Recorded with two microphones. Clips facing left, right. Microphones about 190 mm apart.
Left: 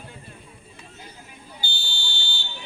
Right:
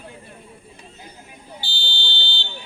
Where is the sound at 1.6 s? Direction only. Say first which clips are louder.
Right 2 dB; 30° right (ahead or behind).